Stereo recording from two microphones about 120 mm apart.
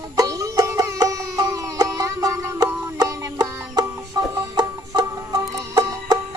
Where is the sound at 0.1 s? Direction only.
30° right (ahead or behind).